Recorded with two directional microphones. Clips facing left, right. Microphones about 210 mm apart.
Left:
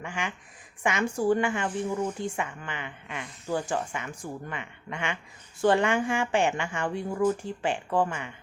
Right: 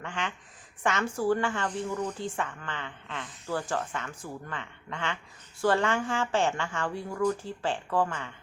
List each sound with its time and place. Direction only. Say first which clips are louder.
0.0 s speech: left 1 dB; 10° left (ahead or behind)